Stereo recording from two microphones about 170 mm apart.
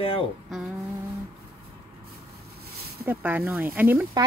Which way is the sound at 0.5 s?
5° right (ahead or behind).